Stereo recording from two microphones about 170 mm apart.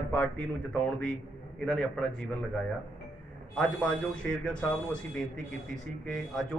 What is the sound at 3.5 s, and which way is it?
Speech, 5° left (ahead or behind).